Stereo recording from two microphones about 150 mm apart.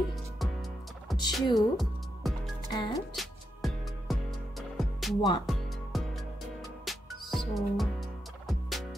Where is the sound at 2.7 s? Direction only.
30° left (ahead or behind).